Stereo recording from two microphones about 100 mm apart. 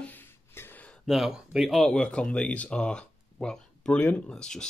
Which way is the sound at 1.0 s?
Centre (ahead or behind).